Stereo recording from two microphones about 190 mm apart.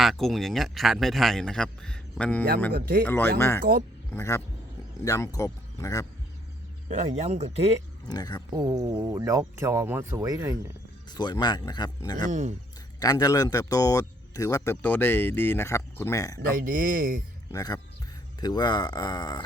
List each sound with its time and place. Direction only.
0.0 s speech: centre (ahead or behind)
2.7 s speech: 50° right (ahead or behind)
3.0 s speech: 10° left (ahead or behind)
3.6 s speech: 45° right (ahead or behind)
4.1 s speech: 15° left (ahead or behind)
6.8 s speech: 40° right (ahead or behind)
8.0 s speech: 20° left (ahead or behind)
8.5 s speech: 20° right (ahead or behind)
11.1 s speech: 20° left (ahead or behind)
12.3 s speech: 40° right (ahead or behind)
13.0 s speech: 20° left (ahead or behind)
16.6 s speech: 45° right (ahead or behind)
17.5 s speech: 20° left (ahead or behind)